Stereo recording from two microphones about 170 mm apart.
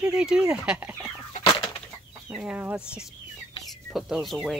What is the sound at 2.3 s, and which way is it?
Speech, 5° right (ahead or behind).